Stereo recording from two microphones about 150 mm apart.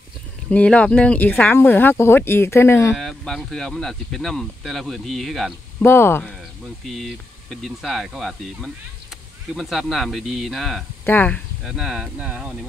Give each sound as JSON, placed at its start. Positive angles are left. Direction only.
{"t": 0.5, "sound": "speech", "side_deg": 10}
{"t": 3.0, "sound": "speech", "side_deg": 0}
{"t": 5.9, "sound": "speech", "side_deg": 15}
{"t": 6.9, "sound": "speech", "side_deg": 0}
{"t": 11.1, "sound": "speech", "side_deg": 10}
{"t": 11.6, "sound": "speech", "side_deg": 0}